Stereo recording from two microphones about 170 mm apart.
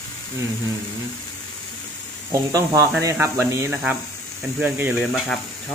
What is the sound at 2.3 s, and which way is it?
Speech, 20° right (ahead or behind).